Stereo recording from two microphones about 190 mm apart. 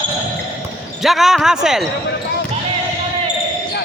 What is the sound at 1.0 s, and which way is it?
Speech, centre (ahead or behind).